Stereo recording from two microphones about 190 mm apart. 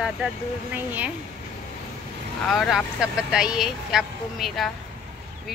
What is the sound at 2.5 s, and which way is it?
Speech, centre (ahead or behind).